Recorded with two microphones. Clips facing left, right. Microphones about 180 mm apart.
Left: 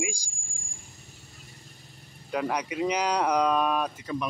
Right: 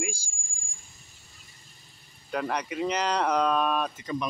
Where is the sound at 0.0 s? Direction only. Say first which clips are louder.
Left 1 dB; 15° left (ahead or behind).